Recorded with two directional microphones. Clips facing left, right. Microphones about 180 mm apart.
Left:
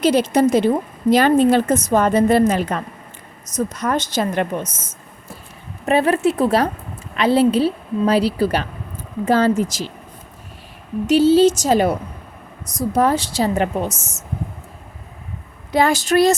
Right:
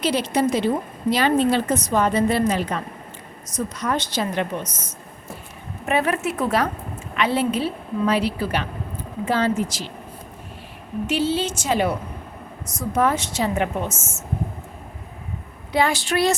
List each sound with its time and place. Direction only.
0.0 s a woman's voice: 45° left (ahead or behind)
5.8 s a woman's voice: 30° left (ahead or behind)
11.0 s a woman's voice: 40° left (ahead or behind)
15.7 s a woman's voice: 45° left (ahead or behind)